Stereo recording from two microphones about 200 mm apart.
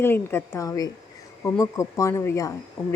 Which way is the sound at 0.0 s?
10° left (ahead or behind).